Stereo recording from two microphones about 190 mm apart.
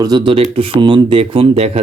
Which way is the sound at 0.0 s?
25° right (ahead or behind).